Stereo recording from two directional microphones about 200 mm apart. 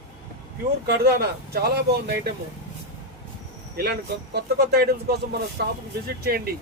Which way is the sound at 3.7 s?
50° right (ahead or behind).